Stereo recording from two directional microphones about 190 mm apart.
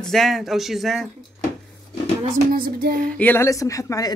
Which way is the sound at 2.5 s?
50° right (ahead or behind).